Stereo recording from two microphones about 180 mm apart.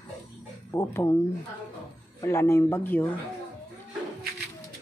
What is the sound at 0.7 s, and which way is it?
Speech, 15° left (ahead or behind).